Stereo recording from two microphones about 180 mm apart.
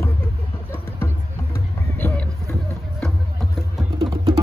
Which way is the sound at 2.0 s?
10° left (ahead or behind).